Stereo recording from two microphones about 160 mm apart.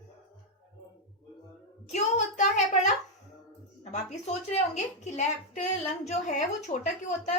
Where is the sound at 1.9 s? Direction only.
45° left (ahead or behind).